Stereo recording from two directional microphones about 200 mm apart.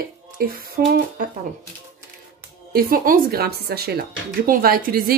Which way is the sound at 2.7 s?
45° right (ahead or behind).